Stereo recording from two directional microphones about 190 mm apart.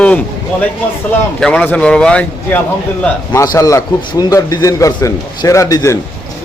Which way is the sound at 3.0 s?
15° left (ahead or behind).